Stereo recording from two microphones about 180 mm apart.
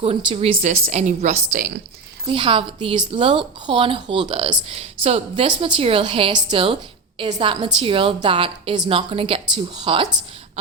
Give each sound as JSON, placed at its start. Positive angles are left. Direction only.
{"t": 0.3, "sound": "a woman's voice", "side_deg": -35}
{"t": 2.2, "sound": "a woman's voice", "side_deg": -30}